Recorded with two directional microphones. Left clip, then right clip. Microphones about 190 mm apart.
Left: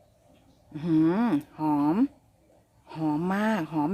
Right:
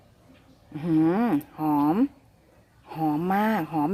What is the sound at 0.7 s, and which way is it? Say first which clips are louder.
A woman's voice: right 1 dB; 15° left (ahead or behind).